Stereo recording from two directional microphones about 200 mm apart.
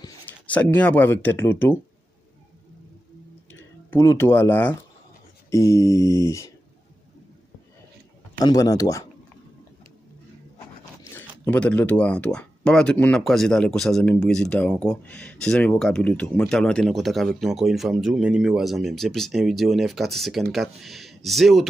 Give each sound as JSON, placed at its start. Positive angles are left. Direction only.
{"t": 0.5, "sound": "speech", "side_deg": 5}
{"t": 3.9, "sound": "speech", "side_deg": 15}
{"t": 8.4, "sound": "speech", "side_deg": 20}
{"t": 11.1, "sound": "speech", "side_deg": 10}